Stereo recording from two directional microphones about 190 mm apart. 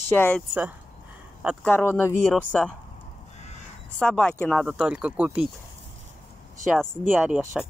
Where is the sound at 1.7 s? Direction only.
10° left (ahead or behind).